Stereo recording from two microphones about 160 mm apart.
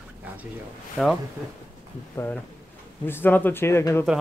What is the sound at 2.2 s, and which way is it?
Speech, 15° left (ahead or behind).